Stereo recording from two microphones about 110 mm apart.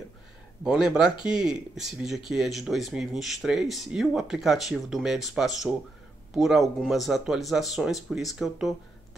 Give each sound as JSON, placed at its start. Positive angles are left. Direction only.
{"t": 0.7, "sound": "speech", "side_deg": -5}